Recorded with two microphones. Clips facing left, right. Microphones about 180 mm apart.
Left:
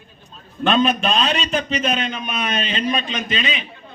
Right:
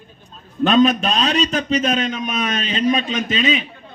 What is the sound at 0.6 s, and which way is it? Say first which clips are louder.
A man's voice: right 3 dB; 40° right (ahead or behind).